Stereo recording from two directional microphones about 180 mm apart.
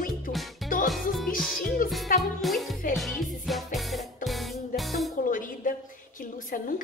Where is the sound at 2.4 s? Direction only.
Centre (ahead or behind).